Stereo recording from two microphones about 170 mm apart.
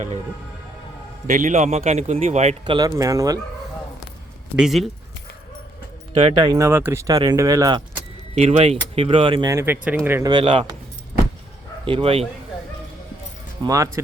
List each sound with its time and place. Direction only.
1.3 s a man's voice: 50° right (ahead or behind)
2.7 s speech: 20° right (ahead or behind)
4.5 s speech: centre (ahead or behind)
6.1 s speech: 30° right (ahead or behind)
8.4 s a man's voice: 35° right (ahead or behind)
9.5 s speech: 15° right (ahead or behind)
11.9 s a man's voice: 30° right (ahead or behind)
13.7 s speech: 20° right (ahead or behind)